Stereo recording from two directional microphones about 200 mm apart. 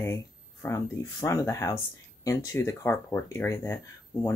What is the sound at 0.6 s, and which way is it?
Speech, 15° left (ahead or behind).